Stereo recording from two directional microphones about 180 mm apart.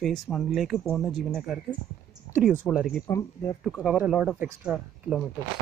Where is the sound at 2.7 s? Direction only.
Centre (ahead or behind).